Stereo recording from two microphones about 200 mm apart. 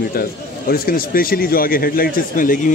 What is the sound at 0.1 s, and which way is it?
Speech, 50° left (ahead or behind).